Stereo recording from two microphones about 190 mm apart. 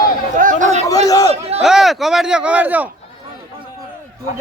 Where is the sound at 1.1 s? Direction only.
20° left (ahead or behind).